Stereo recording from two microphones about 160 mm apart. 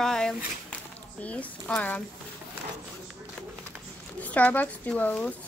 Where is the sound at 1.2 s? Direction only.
10° left (ahead or behind).